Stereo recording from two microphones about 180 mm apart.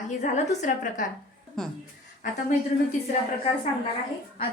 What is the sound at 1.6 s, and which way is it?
Speech, 5° left (ahead or behind).